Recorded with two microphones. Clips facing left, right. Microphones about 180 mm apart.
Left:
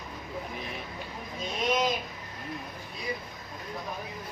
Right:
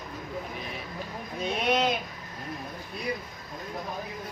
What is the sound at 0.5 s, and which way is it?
Speech, centre (ahead or behind).